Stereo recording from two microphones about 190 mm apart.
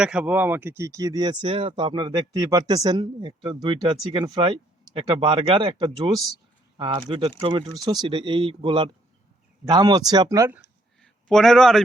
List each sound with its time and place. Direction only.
0.0 s speech: 5° right (ahead or behind)
11.0 s a man's voice: 5° left (ahead or behind)